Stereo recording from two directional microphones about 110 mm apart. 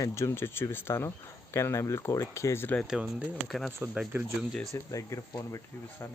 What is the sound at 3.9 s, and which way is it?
Speech, 10° right (ahead or behind).